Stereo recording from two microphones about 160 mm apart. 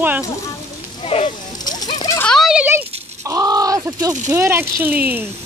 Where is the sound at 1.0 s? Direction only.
40° left (ahead or behind).